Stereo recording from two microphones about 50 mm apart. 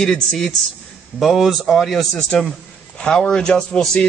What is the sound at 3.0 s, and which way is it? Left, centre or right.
Speech, centre.